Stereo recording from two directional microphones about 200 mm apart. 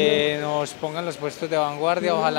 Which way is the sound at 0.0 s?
10° left (ahead or behind).